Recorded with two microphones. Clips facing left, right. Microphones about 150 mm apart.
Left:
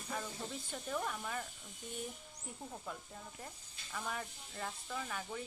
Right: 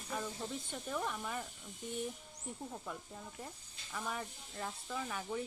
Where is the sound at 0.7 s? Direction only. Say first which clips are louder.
Left 1 dB; centre (ahead or behind).